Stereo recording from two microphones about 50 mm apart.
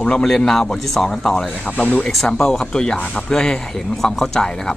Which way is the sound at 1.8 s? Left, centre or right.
Left.